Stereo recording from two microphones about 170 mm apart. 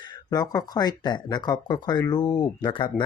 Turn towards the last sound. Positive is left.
turn(degrees=30)  # may be behind; listen again after turning